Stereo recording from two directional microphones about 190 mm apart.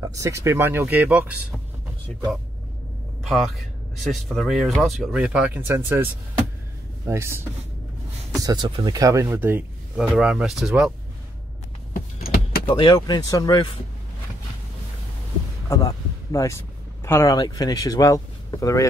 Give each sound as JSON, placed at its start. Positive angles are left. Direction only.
{"t": 0.0, "sound": "speech", "side_deg": -15}
{"t": 3.3, "sound": "speech", "side_deg": 0}
{"t": 7.1, "sound": "speech", "side_deg": -15}
{"t": 11.9, "sound": "power windows", "side_deg": 50}
{"t": 12.6, "sound": "speech", "side_deg": 25}
{"t": 15.7, "sound": "speech", "side_deg": 20}